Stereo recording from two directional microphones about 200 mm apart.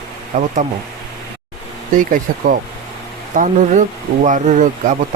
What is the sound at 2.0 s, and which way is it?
Speech, 40° right (ahead or behind).